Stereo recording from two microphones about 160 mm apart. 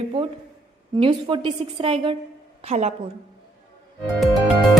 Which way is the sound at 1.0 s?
30° right (ahead or behind).